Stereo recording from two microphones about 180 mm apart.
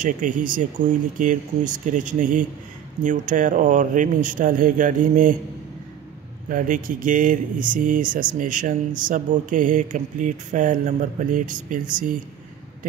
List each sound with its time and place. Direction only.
0.0 s speech: 45° right (ahead or behind)
6.5 s speech: 45° right (ahead or behind)